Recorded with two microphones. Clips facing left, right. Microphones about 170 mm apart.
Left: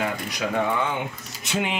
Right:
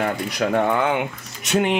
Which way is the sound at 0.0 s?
55° right (ahead or behind).